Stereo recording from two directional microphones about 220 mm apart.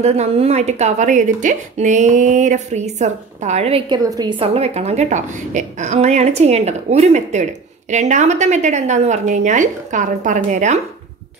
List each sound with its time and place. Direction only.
0.0 s a woman's voice: 30° right (ahead or behind)